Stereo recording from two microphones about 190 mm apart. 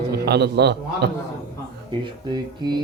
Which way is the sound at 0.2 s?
60° right (ahead or behind).